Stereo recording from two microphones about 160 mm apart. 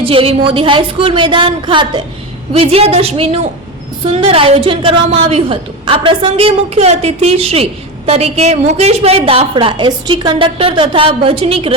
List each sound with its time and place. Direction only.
0.0 s a woman's voice: 35° right (ahead or behind)